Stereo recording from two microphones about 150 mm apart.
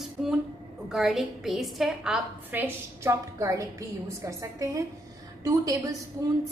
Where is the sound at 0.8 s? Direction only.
Centre (ahead or behind).